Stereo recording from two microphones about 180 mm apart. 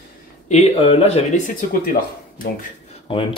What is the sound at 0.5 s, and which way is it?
Speech, 35° left (ahead or behind).